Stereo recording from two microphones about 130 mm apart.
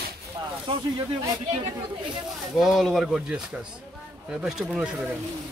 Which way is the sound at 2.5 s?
Centre (ahead or behind).